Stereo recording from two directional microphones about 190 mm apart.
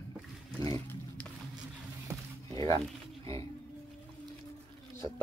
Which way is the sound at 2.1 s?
15° right (ahead or behind).